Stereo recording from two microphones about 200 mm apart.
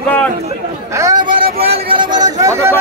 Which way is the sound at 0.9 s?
20° right (ahead or behind).